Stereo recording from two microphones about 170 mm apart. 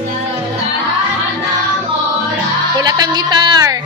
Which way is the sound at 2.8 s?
25° right (ahead or behind).